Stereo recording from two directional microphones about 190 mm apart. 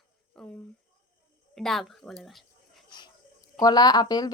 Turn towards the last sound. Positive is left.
turn(degrees=20)  # may be behind; listen again after turning